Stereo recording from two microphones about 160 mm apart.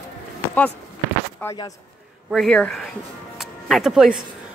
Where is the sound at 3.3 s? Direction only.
Centre (ahead or behind).